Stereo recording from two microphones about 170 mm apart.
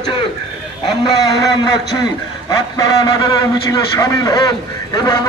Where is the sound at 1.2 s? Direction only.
25° left (ahead or behind).